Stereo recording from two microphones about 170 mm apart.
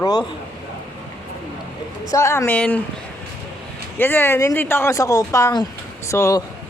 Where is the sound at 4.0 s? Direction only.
10° left (ahead or behind).